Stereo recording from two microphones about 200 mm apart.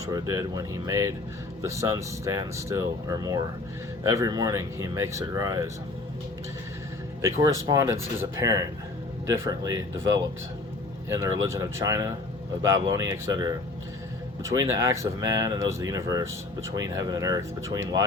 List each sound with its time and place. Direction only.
0.1 s speech: 15° right (ahead or behind)
7.2 s speech: 15° right (ahead or behind)
11.4 s speech: 15° right (ahead or behind)